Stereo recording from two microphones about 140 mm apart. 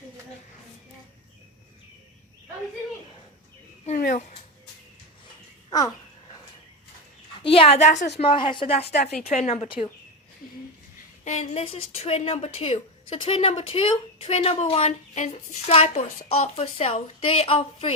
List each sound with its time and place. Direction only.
3.8 s a sound: 70° left (ahead or behind)
7.4 s a woman's voice: 40° left (ahead or behind)
11.3 s a woman's voice: 55° left (ahead or behind)